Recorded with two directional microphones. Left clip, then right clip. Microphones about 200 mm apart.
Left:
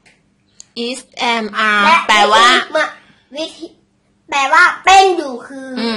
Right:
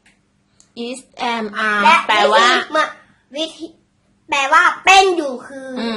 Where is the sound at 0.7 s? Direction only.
10° left (ahead or behind).